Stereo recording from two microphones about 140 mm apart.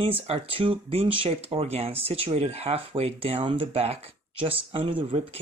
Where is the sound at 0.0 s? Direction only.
40° right (ahead or behind).